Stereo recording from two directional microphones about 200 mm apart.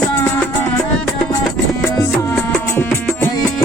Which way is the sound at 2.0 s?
10° left (ahead or behind).